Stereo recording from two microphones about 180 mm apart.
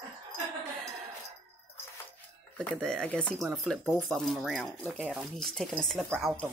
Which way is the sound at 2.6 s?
5° left (ahead or behind).